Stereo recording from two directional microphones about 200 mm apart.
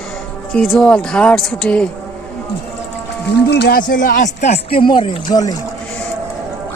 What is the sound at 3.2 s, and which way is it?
Speech, 55° left (ahead or behind).